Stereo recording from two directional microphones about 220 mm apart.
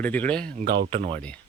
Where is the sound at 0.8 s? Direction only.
25° right (ahead or behind).